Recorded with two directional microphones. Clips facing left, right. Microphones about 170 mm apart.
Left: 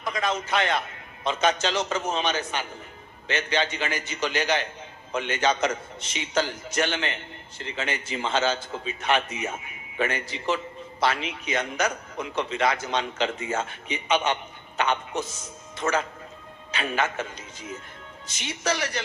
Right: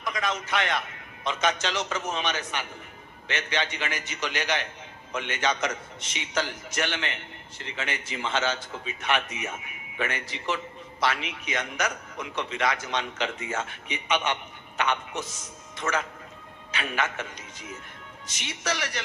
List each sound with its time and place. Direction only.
0.0 s a man's voice: 30° left (ahead or behind)